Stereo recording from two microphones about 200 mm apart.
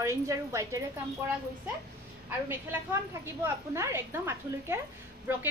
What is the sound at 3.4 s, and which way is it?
A woman's voice, 10° right (ahead or behind).